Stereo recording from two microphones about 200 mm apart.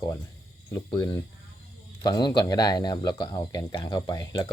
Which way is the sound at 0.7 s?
20° left (ahead or behind).